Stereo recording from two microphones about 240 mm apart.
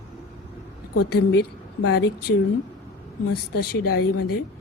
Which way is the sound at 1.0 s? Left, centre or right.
Left.